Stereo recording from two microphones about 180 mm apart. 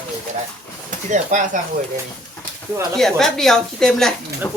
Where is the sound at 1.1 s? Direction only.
45° right (ahead or behind).